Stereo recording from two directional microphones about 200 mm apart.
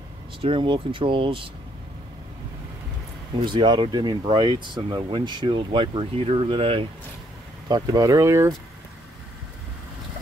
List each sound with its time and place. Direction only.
0.4 s speech: 25° right (ahead or behind)
3.3 s speech: 20° right (ahead or behind)